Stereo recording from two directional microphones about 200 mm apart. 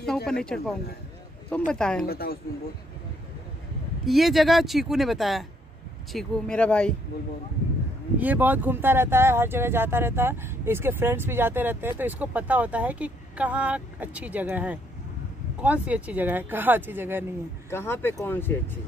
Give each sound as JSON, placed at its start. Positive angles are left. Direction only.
{"t": 0.3, "sound": "speech", "side_deg": 5}
{"t": 2.0, "sound": "speech", "side_deg": 50}
{"t": 4.0, "sound": "speech", "side_deg": 0}
{"t": 8.2, "sound": "speech", "side_deg": -10}
{"t": 17.6, "sound": "speech", "side_deg": 10}